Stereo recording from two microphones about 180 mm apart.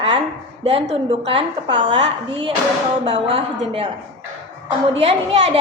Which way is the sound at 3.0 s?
30° right (ahead or behind).